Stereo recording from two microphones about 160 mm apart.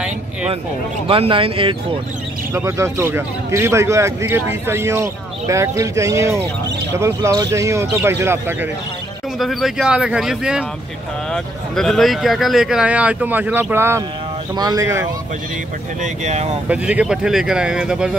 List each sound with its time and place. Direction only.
1.0 s speech: 35° right (ahead or behind)
2.5 s a man's voice: 15° right (ahead or behind)
9.4 s speech: centre (ahead or behind); by 15.0 s 20° right (ahead or behind)
16.0 s speech: 45° right (ahead or behind)
16.6 s speech: 10° right (ahead or behind)